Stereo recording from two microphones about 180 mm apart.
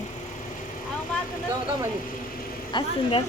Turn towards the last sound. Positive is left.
turn(degrees=25)  # may be behind; listen again after turning